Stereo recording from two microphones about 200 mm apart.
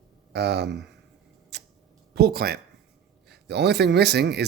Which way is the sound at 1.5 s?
55° right (ahead or behind).